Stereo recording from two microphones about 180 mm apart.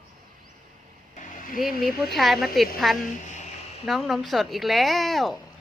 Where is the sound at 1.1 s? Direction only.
45° left (ahead or behind).